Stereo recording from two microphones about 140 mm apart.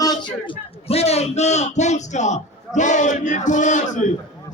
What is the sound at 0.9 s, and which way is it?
A man's voice, 45° left (ahead or behind).